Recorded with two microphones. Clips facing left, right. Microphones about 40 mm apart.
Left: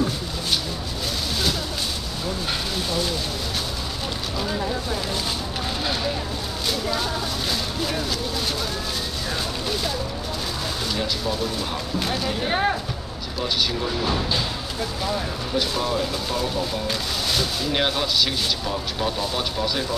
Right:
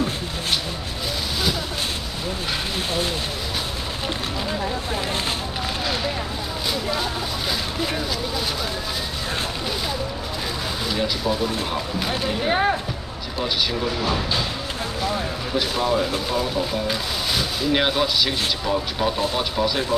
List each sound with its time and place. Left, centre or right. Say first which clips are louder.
2.9 s speech: even; right
6.7 s speech: even; centre
10.9 s speech: right 4 dB; centre
14.0 s speech: right 1 dB; centre